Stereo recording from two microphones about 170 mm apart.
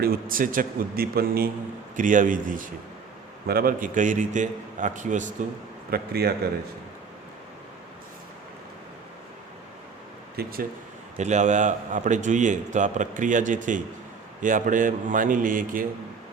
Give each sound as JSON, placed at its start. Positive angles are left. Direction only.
{"t": 0.0, "sound": "a man's voice", "side_deg": -60}
{"t": 2.0, "sound": "a man's voice", "side_deg": -50}
{"t": 3.4, "sound": "a man's voice", "side_deg": -60}
{"t": 5.9, "sound": "a man's voice", "side_deg": -65}
{"t": 10.3, "sound": "a man's voice", "side_deg": -60}
{"t": 11.2, "sound": "a man's voice", "side_deg": -45}